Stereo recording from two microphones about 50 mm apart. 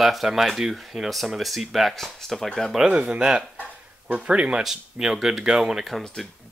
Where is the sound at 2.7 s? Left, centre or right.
Centre.